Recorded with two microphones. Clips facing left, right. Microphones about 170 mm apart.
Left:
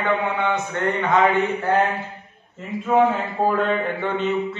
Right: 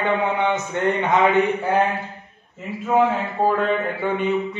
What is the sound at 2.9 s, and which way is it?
A man's voice, centre (ahead or behind).